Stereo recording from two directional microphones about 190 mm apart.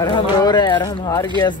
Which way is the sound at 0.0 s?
20° left (ahead or behind).